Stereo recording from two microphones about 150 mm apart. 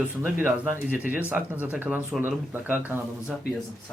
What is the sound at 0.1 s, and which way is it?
Speech, 10° right (ahead or behind).